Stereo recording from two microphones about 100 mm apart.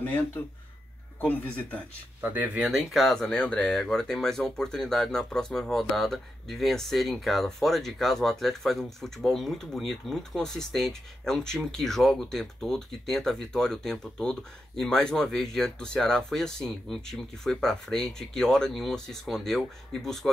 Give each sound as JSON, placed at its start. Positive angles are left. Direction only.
{"t": 0.0, "sound": "speech", "side_deg": 20}
{"t": 2.2, "sound": "speech", "side_deg": -15}
{"t": 2.7, "sound": "speech", "side_deg": 0}